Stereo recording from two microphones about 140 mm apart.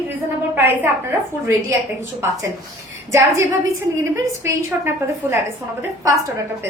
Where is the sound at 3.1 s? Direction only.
20° right (ahead or behind).